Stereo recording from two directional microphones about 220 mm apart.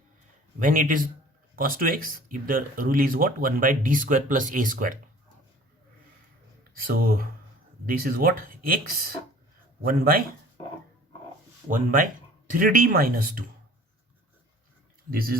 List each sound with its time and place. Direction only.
0.6 s speech: 40° right (ahead or behind)
6.7 s speech: 40° right (ahead or behind)
11.7 s speech: 40° right (ahead or behind)
15.1 s speech: 40° right (ahead or behind)